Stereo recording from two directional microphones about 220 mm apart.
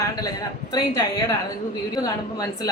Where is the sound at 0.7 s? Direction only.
15° left (ahead or behind).